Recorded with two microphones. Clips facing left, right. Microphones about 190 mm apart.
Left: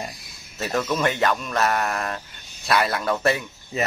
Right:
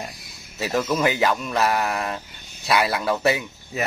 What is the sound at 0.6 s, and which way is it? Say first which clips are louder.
Speech: right 2 dB; 5° right (ahead or behind).